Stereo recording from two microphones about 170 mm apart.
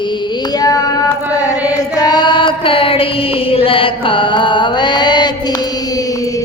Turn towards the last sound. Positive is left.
turn(degrees=20)  # may be behind; listen again after turning